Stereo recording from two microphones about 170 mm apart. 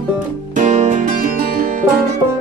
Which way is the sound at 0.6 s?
50° right (ahead or behind).